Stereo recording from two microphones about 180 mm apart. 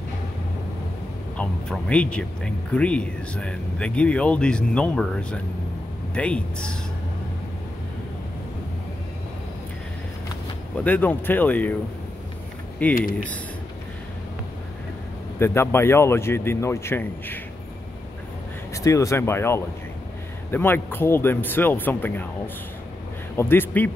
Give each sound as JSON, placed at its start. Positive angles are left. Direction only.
{"t": 1.3, "sound": "speech", "side_deg": 5}
{"t": 10.8, "sound": "speech", "side_deg": 10}
{"t": 12.8, "sound": "speech", "side_deg": 10}
{"t": 15.3, "sound": "speech", "side_deg": 15}
{"t": 18.7, "sound": "speech", "side_deg": 15}
{"t": 23.3, "sound": "speech", "side_deg": 10}